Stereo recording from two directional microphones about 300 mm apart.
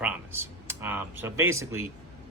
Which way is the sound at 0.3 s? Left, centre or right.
Centre.